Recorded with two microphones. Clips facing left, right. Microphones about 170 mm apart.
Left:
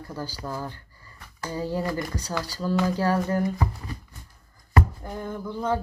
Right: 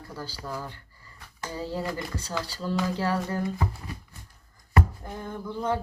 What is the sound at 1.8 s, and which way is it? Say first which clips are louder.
Speech: left 3 dB; 30° right (ahead or behind).